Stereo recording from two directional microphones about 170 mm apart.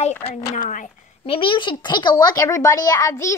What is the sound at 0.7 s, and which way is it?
Speech, 50° left (ahead or behind).